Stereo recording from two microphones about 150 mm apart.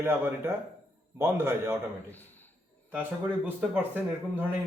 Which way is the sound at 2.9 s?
10° right (ahead or behind).